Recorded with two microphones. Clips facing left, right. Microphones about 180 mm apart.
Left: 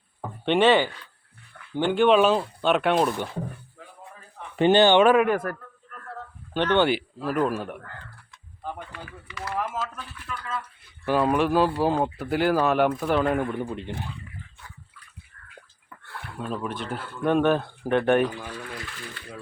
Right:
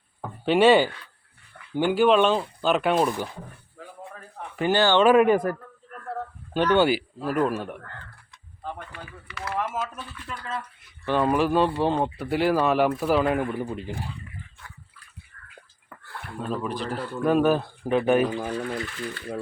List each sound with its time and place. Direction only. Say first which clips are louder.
0.2 s a sound: right 2 dB; 5° right (ahead or behind)
1.7 s speech: even; 10° right (ahead or behind)
4.5 s speech: left 4 dB; 25° left (ahead or behind)
5.3 s a man's voice: right 4 dB; 10° right (ahead or behind)
9.4 s a sound: right 1 dB; centre (ahead or behind)
10.2 s speech: even; 30° right (ahead or behind)
11.0 s speech: even; 5° left (ahead or behind)
16.5 s speech: right 2 dB; centre (ahead or behind)
18.3 s speech: right 8 dB; 45° right (ahead or behind)